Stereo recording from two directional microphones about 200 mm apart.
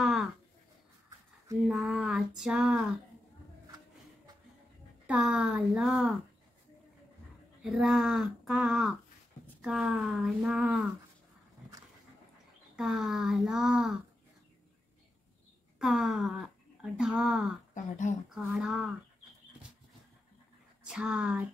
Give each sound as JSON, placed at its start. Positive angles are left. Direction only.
{"t": 0.0, "sound": "a sound", "side_deg": 0}
{"t": 1.7, "sound": "speech", "side_deg": 0}
{"t": 5.0, "sound": "speech", "side_deg": -5}
{"t": 7.6, "sound": "speech", "side_deg": 0}
{"t": 12.7, "sound": "speech", "side_deg": 0}
{"t": 15.8, "sound": "speech", "side_deg": 0}
{"t": 17.7, "sound": "speech", "side_deg": 40}
{"t": 18.3, "sound": "speech", "side_deg": -5}
{"t": 20.8, "sound": "speech", "side_deg": -5}